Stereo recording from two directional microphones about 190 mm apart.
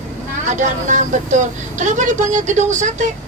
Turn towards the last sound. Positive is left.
turn(degrees=-40)  # may be behind; listen again after turning